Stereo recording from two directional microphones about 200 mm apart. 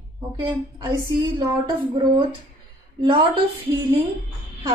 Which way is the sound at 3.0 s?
25° right (ahead or behind).